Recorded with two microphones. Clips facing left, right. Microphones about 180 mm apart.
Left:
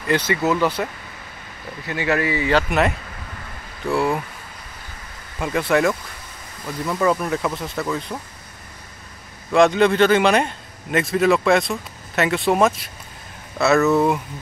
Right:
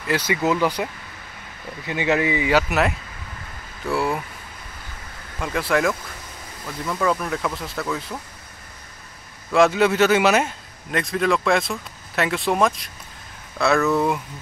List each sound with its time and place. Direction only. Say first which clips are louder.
0.1 s a man's voice: left 2 dB; 10° right (ahead or behind)
1.9 s a man's voice: even; 20° right (ahead or behind); by 4.2 s centre (ahead or behind)
5.4 s speech: left 3 dB; centre (ahead or behind)
9.5 s speech: left 2 dB; 5° right (ahead or behind)